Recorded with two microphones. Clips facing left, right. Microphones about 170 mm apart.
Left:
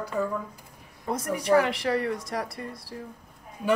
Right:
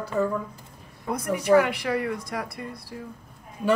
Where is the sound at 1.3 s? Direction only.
35° left (ahead or behind).